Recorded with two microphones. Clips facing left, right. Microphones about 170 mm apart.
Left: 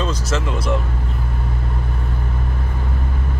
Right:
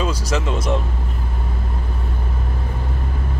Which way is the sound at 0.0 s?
15° right (ahead or behind).